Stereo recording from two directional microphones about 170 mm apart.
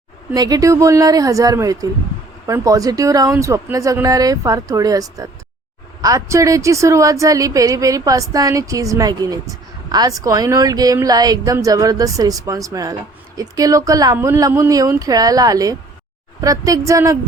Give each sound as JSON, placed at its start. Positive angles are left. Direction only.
{"t": 0.3, "sound": "speech", "side_deg": -20}